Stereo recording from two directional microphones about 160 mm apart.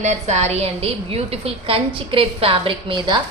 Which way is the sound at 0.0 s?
45° right (ahead or behind).